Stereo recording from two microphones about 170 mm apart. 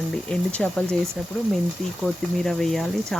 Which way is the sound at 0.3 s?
5° left (ahead or behind).